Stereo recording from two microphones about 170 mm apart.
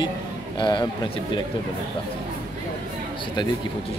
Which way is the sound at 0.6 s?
25° left (ahead or behind).